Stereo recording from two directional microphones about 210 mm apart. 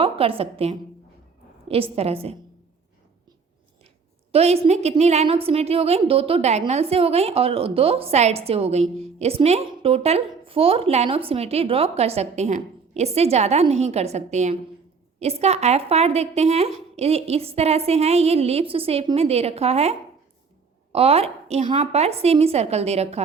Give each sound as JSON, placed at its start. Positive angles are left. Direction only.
{"t": 0.0, "sound": "a woman's voice", "side_deg": -25}
{"t": 4.3, "sound": "a woman's voice", "side_deg": -30}